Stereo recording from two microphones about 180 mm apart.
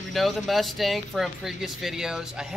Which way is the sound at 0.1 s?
Centre (ahead or behind).